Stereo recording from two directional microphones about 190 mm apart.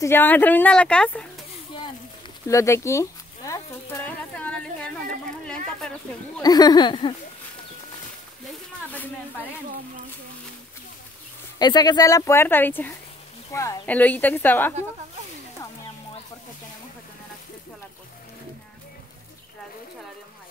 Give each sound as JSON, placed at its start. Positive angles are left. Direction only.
{"t": 0.0, "sound": "speech", "side_deg": 10}
{"t": 2.4, "sound": "speech", "side_deg": 15}
{"t": 6.4, "sound": "speech", "side_deg": 20}
{"t": 8.9, "sound": "speech", "side_deg": 10}
{"t": 11.5, "sound": "speech", "side_deg": 20}